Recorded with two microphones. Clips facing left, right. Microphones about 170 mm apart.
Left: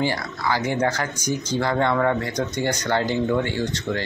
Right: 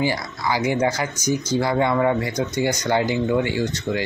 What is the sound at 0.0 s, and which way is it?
Speech, 10° right (ahead or behind).